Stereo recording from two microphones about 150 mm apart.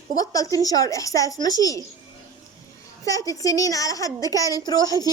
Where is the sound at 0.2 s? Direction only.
25° left (ahead or behind).